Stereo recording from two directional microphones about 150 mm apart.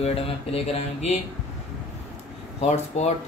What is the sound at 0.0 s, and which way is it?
Speech, 40° left (ahead or behind).